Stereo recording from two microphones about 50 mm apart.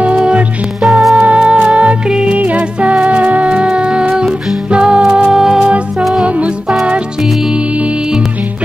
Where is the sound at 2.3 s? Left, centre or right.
Right; by 5.7 s centre.